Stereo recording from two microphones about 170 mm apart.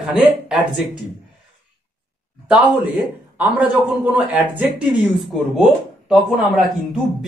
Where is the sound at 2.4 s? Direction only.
10° right (ahead or behind).